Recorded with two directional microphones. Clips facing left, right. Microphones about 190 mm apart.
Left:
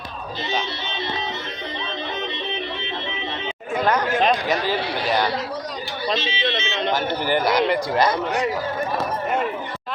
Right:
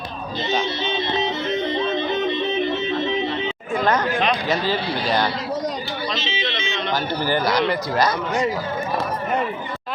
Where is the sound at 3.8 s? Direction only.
10° left (ahead or behind).